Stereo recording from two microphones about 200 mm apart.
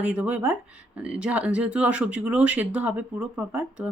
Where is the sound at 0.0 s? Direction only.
10° right (ahead or behind).